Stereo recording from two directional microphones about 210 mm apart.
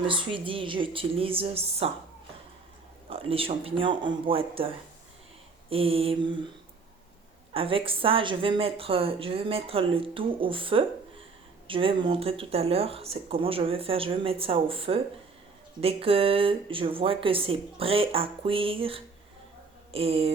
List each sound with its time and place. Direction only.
0.1 s a woman's voice: 25° right (ahead or behind)
3.1 s a woman's voice: 25° right (ahead or behind)
7.5 s a woman's voice: 25° right (ahead or behind)